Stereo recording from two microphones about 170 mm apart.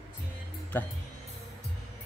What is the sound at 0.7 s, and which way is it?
Speech, 10° left (ahead or behind).